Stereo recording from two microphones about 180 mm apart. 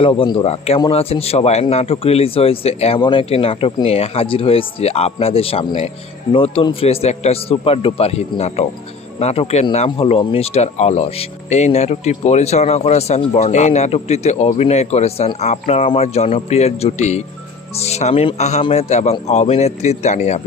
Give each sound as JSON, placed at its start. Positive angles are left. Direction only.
{"t": 0.0, "sound": "speech", "side_deg": 30}